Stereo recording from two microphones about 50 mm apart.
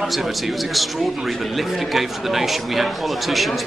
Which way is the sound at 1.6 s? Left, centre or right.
Centre.